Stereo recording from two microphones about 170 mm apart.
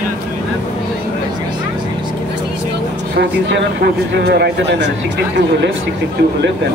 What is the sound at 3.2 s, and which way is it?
Speech, 75° right (ahead or behind).